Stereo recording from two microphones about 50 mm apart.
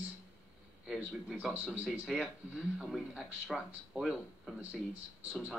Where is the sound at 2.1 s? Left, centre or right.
Centre.